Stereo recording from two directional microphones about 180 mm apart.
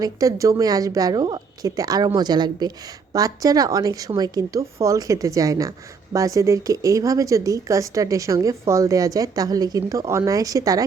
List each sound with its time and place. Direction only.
0.0 s speech: 20° right (ahead or behind)